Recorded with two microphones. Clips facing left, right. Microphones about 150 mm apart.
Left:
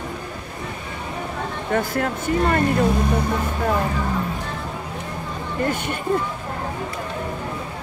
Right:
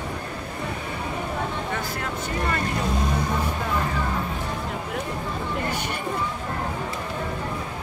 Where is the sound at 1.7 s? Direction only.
50° left (ahead or behind).